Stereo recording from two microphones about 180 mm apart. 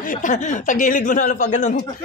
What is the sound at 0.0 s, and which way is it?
Speech, 45° left (ahead or behind).